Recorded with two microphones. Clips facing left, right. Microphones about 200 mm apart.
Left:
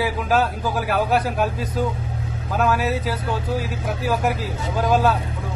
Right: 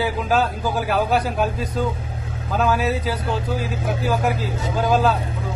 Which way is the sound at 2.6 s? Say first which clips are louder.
Right 1 dB; centre (ahead or behind).